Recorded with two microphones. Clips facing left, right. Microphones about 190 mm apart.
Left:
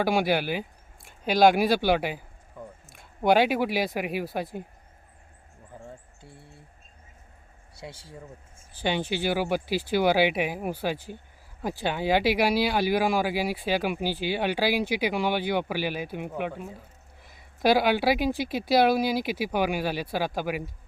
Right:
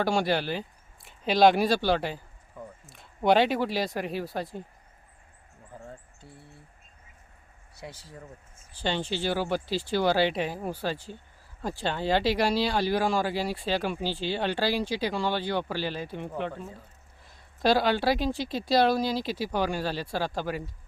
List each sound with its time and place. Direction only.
0.0 s speech: 10° left (ahead or behind)
7.8 s speech: 30° left (ahead or behind)
8.5 s speech: 10° left (ahead or behind)